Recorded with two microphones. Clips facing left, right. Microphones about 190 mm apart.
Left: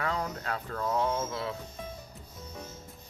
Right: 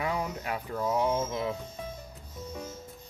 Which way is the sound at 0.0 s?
15° right (ahead or behind).